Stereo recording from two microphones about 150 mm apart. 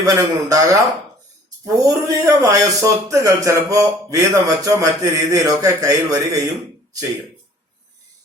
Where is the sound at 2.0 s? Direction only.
20° right (ahead or behind).